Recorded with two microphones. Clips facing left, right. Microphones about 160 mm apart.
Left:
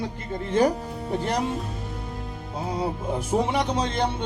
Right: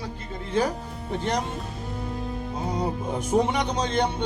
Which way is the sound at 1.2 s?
5° left (ahead or behind).